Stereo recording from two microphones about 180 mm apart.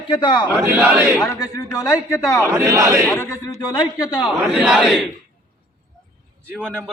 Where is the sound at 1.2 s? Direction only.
20° left (ahead or behind).